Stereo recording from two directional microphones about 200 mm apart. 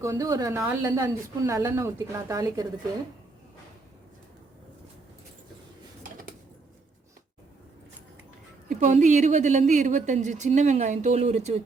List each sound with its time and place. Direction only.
0.0 s a woman's voice: 15° right (ahead or behind)
6.0 s dishes: 45° right (ahead or behind)
8.7 s a woman's voice: 40° right (ahead or behind)